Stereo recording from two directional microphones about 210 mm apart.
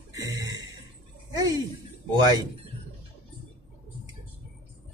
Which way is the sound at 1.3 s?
20° right (ahead or behind).